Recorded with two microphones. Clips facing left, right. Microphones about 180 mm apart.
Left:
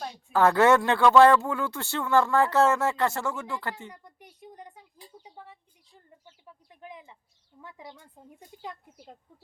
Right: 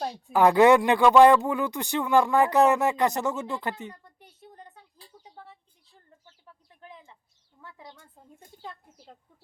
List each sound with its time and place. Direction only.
0.0 s a woman's voice: 35° right (ahead or behind)
0.3 s speech: 15° right (ahead or behind)
3.9 s a sound: 15° left (ahead or behind)
8.6 s speech: 15° left (ahead or behind)